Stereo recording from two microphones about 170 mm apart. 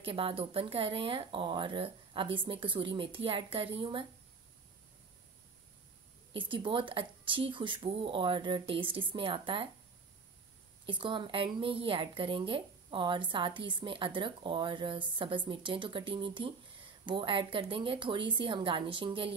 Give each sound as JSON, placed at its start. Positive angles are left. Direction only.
{"t": 0.0, "sound": "speech", "side_deg": -35}
{"t": 6.3, "sound": "speech", "side_deg": -30}
{"t": 10.9, "sound": "speech", "side_deg": -30}